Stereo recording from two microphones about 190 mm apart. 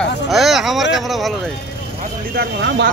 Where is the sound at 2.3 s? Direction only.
65° right (ahead or behind).